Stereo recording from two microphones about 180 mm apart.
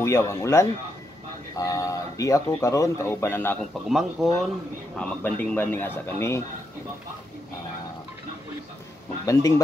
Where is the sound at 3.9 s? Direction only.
Centre (ahead or behind).